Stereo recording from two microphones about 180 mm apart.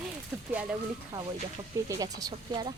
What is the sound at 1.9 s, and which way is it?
Speech, 20° right (ahead or behind).